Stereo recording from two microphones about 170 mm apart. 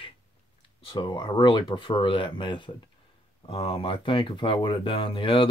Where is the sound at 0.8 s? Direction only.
25° left (ahead or behind).